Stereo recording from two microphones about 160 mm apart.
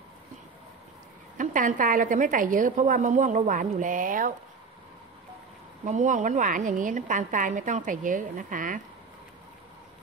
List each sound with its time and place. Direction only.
1.4 s a woman's voice: 55° right (ahead or behind)
5.9 s a woman's voice: 50° right (ahead or behind)